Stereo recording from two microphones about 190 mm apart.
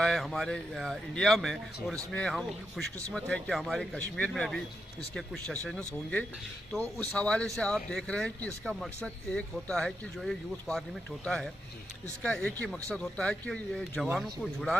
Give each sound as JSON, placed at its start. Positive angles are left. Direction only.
{"t": 0.0, "sound": "speech", "side_deg": 0}